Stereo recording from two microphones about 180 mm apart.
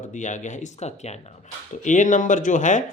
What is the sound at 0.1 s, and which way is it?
A man's voice, 40° left (ahead or behind).